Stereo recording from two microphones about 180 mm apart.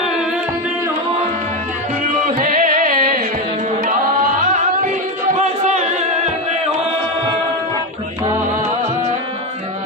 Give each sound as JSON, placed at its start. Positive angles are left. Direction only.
{"t": 0.0, "sound": "music", "side_deg": 0}
{"t": 2.4, "sound": "carnatic music", "side_deg": -50}
{"t": 3.8, "sound": "tabla", "side_deg": -50}
{"t": 5.4, "sound": "music", "side_deg": -40}
{"t": 8.8, "sound": "music", "side_deg": -40}